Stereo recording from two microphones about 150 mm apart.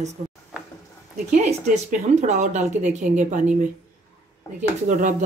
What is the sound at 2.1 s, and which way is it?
A woman's voice, 50° right (ahead or behind).